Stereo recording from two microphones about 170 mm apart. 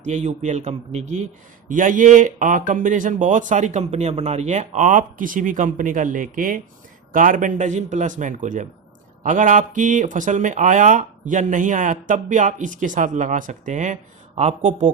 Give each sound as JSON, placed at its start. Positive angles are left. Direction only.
{"t": 0.0, "sound": "speech", "side_deg": -45}